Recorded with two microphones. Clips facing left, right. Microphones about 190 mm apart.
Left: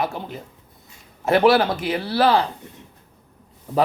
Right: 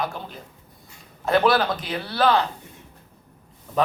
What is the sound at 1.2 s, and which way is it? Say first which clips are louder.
Speech: left 3 dB; 25° left (ahead or behind).